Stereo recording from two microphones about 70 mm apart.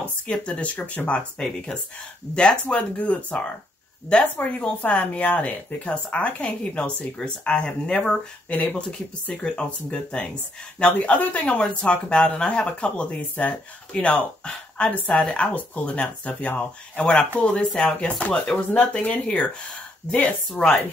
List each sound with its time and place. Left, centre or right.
0.3 s speech: centre